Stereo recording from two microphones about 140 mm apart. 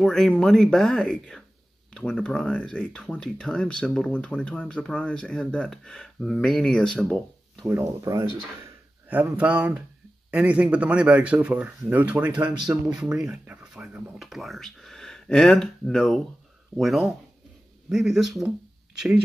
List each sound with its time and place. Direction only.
0.0 s speech: 5° left (ahead or behind)
7.8 s speech: 25° right (ahead or behind)
9.1 s speech: 10° right (ahead or behind)